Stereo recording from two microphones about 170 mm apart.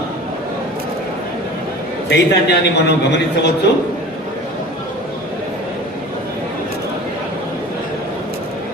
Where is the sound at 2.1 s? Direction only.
80° left.